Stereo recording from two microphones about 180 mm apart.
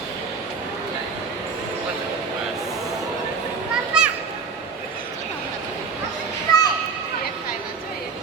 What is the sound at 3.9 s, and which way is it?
Children playing, 5° right (ahead or behind).